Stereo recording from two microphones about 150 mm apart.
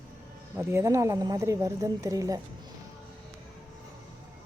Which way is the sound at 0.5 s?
20° right (ahead or behind).